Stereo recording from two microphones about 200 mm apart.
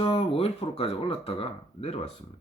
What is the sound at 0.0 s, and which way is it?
Speech, 30° left (ahead or behind).